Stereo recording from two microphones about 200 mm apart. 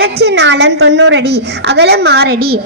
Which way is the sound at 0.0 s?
55° right (ahead or behind).